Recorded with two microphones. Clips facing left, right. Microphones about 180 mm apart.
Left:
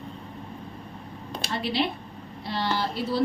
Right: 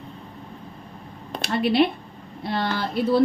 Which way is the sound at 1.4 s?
60° right (ahead or behind).